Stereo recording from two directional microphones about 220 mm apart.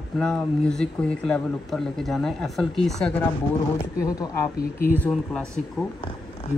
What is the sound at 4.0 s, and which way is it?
Speech, 15° left (ahead or behind).